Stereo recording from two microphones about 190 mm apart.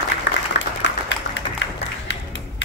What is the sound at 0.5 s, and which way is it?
Applause, 70° left (ahead or behind).